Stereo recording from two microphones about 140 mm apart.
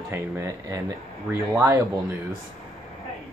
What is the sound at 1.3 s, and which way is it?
Speech, 15° right (ahead or behind).